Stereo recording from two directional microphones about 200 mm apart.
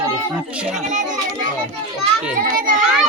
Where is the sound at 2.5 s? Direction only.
45° right (ahead or behind).